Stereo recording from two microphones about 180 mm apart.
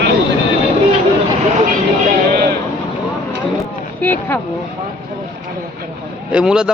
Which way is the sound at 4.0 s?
10° left (ahead or behind).